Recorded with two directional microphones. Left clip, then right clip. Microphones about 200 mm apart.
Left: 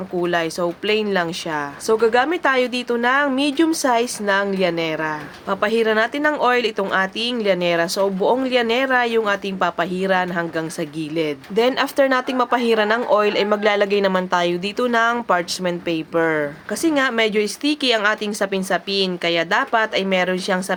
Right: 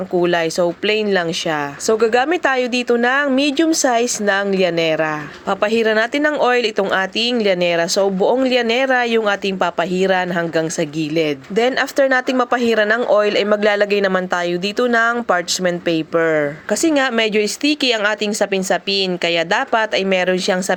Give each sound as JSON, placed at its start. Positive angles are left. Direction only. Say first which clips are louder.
{"t": 0.2, "sound": "speech", "louder": "right 4 dB", "side_deg": -20}